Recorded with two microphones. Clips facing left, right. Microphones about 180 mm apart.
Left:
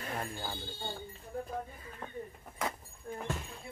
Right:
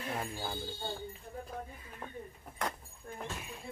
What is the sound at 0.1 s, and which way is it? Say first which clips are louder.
Speech: even; 5° right (ahead or behind).